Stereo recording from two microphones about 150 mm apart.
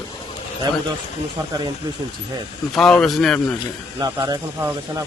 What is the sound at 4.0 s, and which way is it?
Speech, 25° right (ahead or behind).